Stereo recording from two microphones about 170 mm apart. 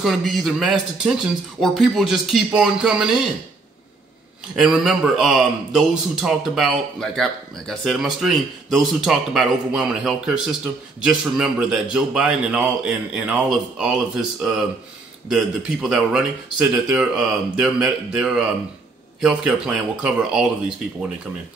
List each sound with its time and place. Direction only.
0.0 s a man's voice: centre (ahead or behind)
4.6 s a man's voice: centre (ahead or behind)